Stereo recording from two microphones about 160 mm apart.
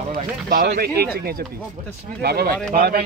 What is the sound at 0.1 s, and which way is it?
Speech, 60° right (ahead or behind).